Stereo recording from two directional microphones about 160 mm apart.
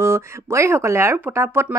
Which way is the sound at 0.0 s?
15° right (ahead or behind).